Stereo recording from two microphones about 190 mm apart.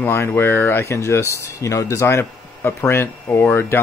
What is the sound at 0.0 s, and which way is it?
Speech, 10° left (ahead or behind).